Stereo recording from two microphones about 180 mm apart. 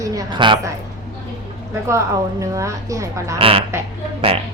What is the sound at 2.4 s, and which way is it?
Speech, 15° right (ahead or behind).